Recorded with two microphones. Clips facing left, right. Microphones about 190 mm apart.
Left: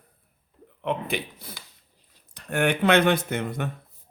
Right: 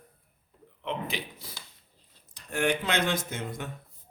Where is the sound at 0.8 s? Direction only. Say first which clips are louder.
Left 6 dB; 55° left (ahead or behind).